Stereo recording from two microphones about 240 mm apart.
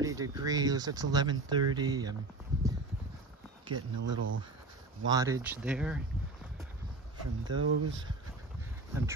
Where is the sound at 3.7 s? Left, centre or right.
Right.